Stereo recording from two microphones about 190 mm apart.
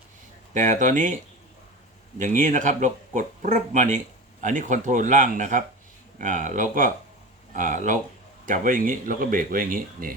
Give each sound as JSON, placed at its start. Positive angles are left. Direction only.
{"t": 0.5, "sound": "speech", "side_deg": -40}